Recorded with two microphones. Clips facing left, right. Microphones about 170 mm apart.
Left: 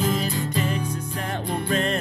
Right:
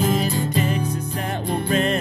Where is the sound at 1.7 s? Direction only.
10° right (ahead or behind).